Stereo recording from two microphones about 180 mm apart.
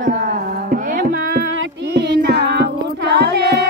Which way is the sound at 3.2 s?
65° right (ahead or behind).